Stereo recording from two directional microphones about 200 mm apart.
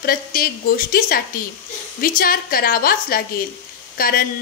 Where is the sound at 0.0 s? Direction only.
45° left (ahead or behind).